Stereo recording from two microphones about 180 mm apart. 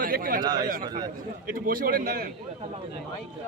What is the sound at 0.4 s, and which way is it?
Speech, 20° right (ahead or behind).